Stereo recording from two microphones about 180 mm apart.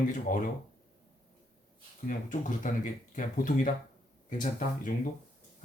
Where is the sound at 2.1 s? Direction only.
45° left (ahead or behind).